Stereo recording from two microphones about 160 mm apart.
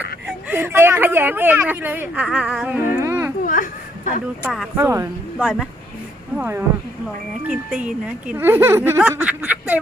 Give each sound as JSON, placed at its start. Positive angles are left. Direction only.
{"t": 0.4, "sound": "a woman's voice", "side_deg": -15}
{"t": 3.4, "sound": "a sound", "side_deg": 55}
{"t": 4.4, "sound": "speech", "side_deg": 0}
{"t": 4.8, "sound": "a woman's voice", "side_deg": -15}